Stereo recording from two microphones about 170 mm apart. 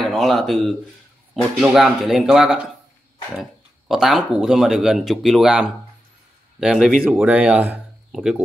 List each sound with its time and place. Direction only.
0.0 s speech: centre (ahead or behind)